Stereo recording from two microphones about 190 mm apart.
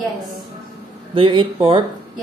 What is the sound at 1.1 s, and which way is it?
Speech, 25° right (ahead or behind).